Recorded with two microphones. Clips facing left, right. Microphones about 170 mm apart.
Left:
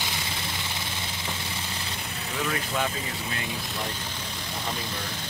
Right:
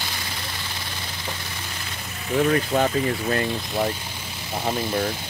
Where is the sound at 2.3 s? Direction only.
45° right (ahead or behind).